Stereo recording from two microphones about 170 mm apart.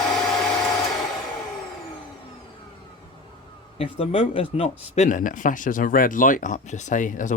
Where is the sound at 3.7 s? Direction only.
30° left (ahead or behind).